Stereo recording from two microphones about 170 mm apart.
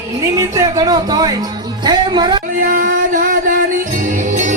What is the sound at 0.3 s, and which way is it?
Speech, 20° right (ahead or behind).